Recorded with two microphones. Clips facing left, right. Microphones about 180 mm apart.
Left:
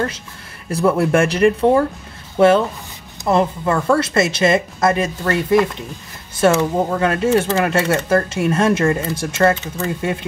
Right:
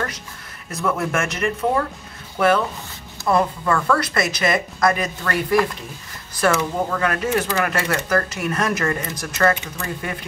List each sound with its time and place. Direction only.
0.7 s speech: 35° left (ahead or behind)